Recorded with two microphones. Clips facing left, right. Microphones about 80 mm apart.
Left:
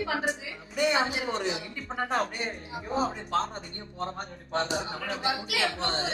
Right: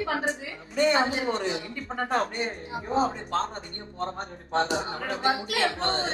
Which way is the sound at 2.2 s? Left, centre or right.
Right.